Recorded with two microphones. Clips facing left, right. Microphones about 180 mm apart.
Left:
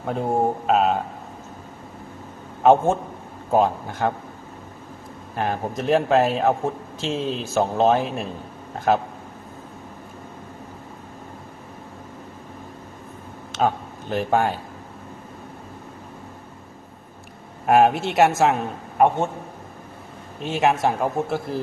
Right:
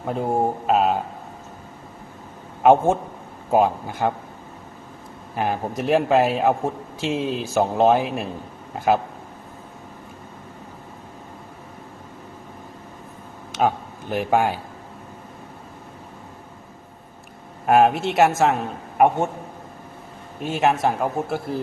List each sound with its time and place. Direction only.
0.0 s speech: centre (ahead or behind)
2.6 s speech: 10° right (ahead or behind)
5.4 s speech: 10° right (ahead or behind)
13.5 s speech: 10° right (ahead or behind)
17.7 s speech: centre (ahead or behind)
18.9 s speech: 10° right (ahead or behind)
20.4 s speech: centre (ahead or behind)